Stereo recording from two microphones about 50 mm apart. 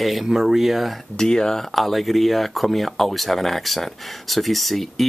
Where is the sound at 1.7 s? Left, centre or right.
Centre.